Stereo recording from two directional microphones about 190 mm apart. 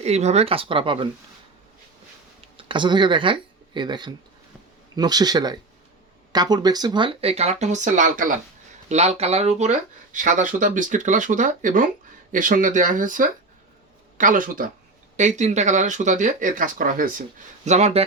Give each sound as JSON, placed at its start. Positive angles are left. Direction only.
{"t": 0.0, "sound": "speech", "side_deg": -35}
{"t": 2.6, "sound": "speech", "side_deg": -25}
{"t": 17.7, "sound": "speech", "side_deg": -35}